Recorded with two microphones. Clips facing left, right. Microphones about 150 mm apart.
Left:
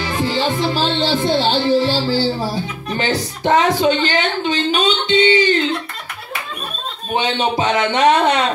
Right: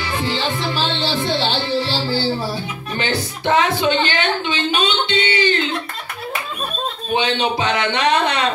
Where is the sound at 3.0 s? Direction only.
40° left (ahead or behind).